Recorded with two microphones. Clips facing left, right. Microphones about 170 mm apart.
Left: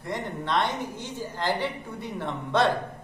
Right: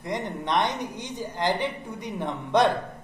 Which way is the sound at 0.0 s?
20° right (ahead or behind).